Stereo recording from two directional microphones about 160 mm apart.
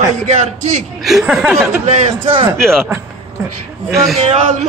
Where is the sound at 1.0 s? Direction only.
Centre (ahead or behind).